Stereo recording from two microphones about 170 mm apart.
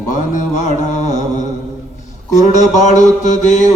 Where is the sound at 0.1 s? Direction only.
45° left (ahead or behind).